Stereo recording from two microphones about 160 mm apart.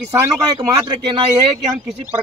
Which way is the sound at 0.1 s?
20° right (ahead or behind).